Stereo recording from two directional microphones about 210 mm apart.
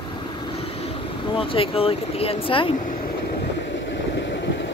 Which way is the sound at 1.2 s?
25° left (ahead or behind).